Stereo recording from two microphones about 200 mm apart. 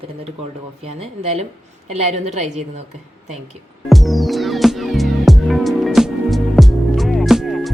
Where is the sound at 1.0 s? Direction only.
30° right (ahead or behind).